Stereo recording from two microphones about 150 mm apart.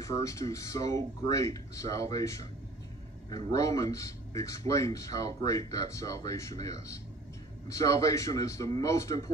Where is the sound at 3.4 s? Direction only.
20° left (ahead or behind).